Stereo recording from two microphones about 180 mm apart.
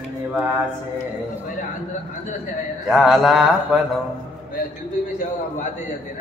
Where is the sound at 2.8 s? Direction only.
Centre (ahead or behind).